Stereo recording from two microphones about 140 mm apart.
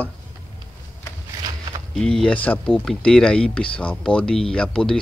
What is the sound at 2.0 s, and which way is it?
Speech, 5° left (ahead or behind).